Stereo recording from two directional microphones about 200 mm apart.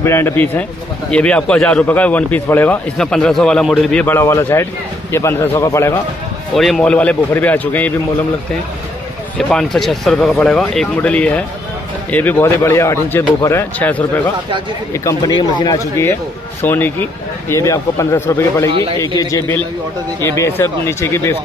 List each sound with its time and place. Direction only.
0.0 s a man's voice: 10° left (ahead or behind)
6.5 s a man's voice: centre (ahead or behind)
9.5 s a man's voice: 5° left (ahead or behind)